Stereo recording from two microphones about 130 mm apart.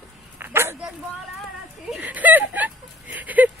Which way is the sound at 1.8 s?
10° right (ahead or behind).